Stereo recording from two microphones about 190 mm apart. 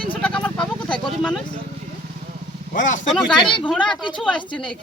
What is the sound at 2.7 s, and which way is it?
Speech, 40° left (ahead or behind).